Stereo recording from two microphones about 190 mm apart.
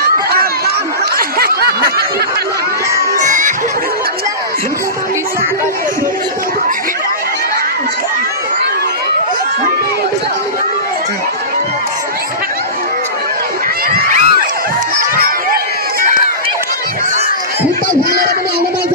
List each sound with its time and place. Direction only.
1.1 s snicker: 50° right (ahead or behind)
3.2 s music: 40° right (ahead or behind)
13.8 s crowd: 50° right (ahead or behind)